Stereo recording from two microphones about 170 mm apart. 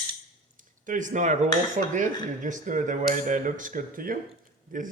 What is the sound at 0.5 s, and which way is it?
Speech, 50° right (ahead or behind).